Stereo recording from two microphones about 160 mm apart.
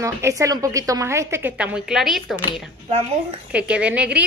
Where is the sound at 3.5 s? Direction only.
5° right (ahead or behind).